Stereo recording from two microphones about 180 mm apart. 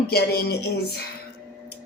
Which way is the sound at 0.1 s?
60° left (ahead or behind).